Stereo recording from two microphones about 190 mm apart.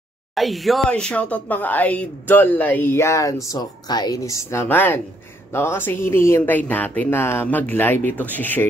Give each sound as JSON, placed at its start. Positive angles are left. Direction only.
{"t": 0.3, "sound": "speech", "side_deg": 0}